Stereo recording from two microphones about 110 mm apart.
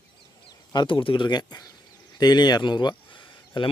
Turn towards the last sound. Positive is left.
turn(degrees=45)  # may be behind; listen again after turning